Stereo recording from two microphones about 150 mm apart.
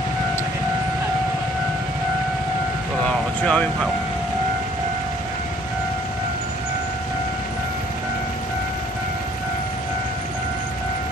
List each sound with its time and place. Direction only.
3.1 s vehicle: 5° left (ahead or behind)